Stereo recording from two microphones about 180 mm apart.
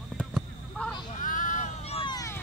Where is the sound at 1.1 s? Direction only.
45° left (ahead or behind); by 2.4 s 20° left (ahead or behind).